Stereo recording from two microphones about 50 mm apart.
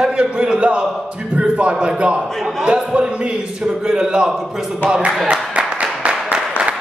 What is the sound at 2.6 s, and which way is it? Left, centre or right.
A man's voice, centre.